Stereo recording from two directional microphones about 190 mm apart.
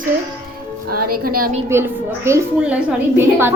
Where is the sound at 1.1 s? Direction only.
50° right (ahead or behind).